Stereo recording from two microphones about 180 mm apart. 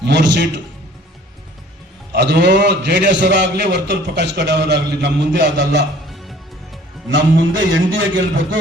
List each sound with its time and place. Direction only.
0.0 s a man's voice: 75° right (ahead or behind)
2.1 s a man's voice: 70° right (ahead or behind)
7.1 s a man's voice: 90° right